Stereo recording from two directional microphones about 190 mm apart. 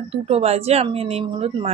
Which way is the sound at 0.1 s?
30° right (ahead or behind).